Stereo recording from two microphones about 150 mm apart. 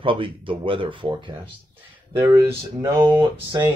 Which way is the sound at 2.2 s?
20° right (ahead or behind).